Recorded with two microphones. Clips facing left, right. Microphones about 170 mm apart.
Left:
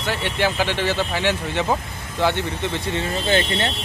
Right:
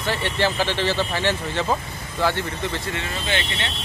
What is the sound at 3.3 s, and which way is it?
Speech, 40° left (ahead or behind).